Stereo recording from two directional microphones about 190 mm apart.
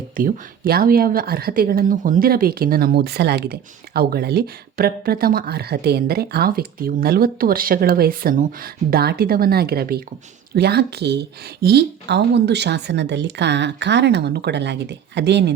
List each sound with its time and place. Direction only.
0.2 s speech: 50° right (ahead or behind); by 15.5 s 65° right (ahead or behind)